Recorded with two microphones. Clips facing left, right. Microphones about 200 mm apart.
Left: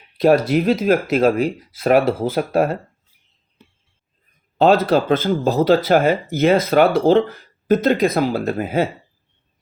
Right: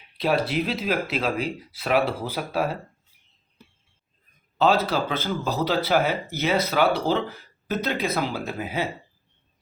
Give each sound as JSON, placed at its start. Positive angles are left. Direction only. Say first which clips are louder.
{"t": 0.2, "sound": "speech", "louder": "left 9 dB", "side_deg": 45}
{"t": 4.5, "sound": "speech", "louder": "left 7 dB", "side_deg": 50}